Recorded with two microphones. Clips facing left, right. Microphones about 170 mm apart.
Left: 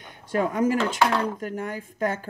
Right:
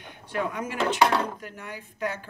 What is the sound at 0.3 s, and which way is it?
Speech, 45° left (ahead or behind).